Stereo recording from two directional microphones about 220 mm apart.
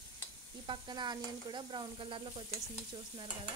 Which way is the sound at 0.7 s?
20° right (ahead or behind).